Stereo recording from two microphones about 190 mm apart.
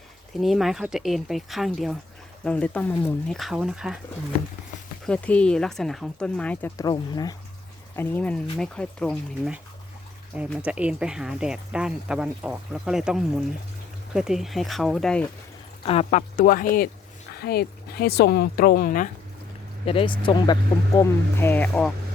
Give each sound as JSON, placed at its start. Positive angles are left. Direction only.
{"t": 0.3, "sound": "speech", "side_deg": 0}
{"t": 5.0, "sound": "speech", "side_deg": 5}
{"t": 6.7, "sound": "speech", "side_deg": 20}
{"t": 7.9, "sound": "speech", "side_deg": 10}
{"t": 15.9, "sound": "speech", "side_deg": 35}
{"t": 19.8, "sound": "speech", "side_deg": 30}